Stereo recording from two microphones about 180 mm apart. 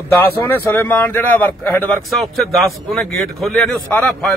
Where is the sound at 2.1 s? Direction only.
Centre (ahead or behind).